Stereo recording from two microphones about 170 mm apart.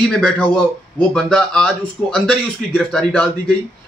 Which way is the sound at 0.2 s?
5° left (ahead or behind).